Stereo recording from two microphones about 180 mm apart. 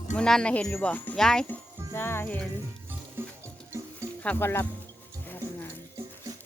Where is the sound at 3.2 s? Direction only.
10° right (ahead or behind).